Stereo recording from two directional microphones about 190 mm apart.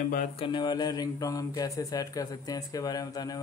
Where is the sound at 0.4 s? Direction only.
25° left (ahead or behind).